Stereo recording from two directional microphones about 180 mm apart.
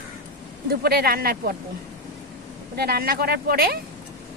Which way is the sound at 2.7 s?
60° right (ahead or behind).